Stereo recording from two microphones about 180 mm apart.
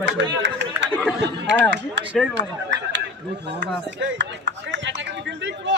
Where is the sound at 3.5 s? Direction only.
80° right.